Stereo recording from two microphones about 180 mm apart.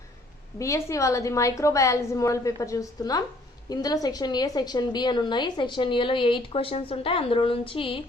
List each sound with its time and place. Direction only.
0.6 s a woman's voice: 15° left (ahead or behind)